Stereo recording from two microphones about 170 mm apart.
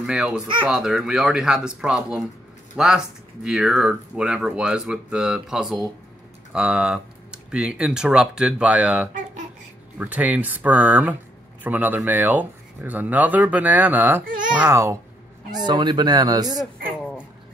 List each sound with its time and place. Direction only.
0.0 s speech: 5° right (ahead or behind)
15.5 s speech: 25° right (ahead or behind)